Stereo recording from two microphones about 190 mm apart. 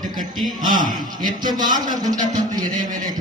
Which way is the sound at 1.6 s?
45° right (ahead or behind).